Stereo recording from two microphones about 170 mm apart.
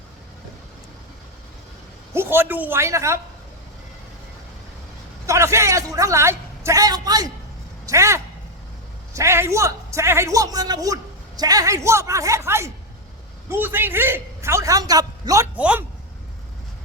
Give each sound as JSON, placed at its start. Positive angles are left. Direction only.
{"t": 2.1, "sound": "a man's voice", "side_deg": -10}
{"t": 5.2, "sound": "a man's voice", "side_deg": -15}
{"t": 15.5, "sound": "a man's voice", "side_deg": -5}